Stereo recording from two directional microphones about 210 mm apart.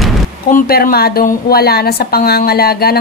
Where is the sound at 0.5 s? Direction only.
45° left (ahead or behind).